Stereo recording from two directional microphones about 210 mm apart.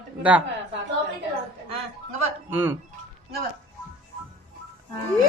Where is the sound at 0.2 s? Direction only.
5° right (ahead or behind).